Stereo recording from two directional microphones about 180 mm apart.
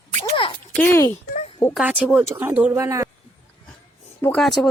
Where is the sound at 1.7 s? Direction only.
10° right (ahead or behind).